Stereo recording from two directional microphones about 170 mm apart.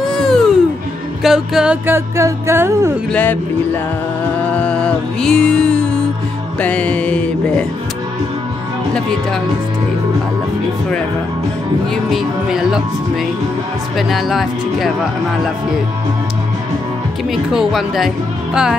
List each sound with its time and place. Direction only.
0.0 s music: centre (ahead or behind)
1.2 s speech: 5° right (ahead or behind)
3.1 s music: 10° left (ahead or behind)
11.9 s speech: centre (ahead or behind)
17.3 s speech: centre (ahead or behind)